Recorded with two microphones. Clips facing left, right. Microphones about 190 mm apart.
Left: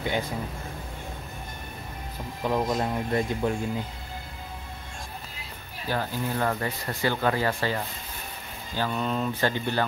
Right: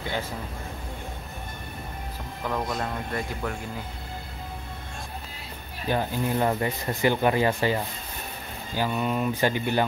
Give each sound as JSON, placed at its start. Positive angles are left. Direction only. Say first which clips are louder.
{"t": 0.0, "sound": "a sound", "louder": "left 3 dB", "side_deg": 15}
{"t": 2.4, "sound": "speech", "louder": "left 3 dB", "side_deg": 20}
{"t": 5.9, "sound": "speech", "louder": "right 3 dB", "side_deg": -20}